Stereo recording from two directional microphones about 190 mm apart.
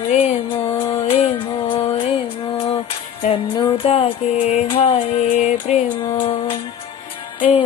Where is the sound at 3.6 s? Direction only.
25° left (ahead or behind).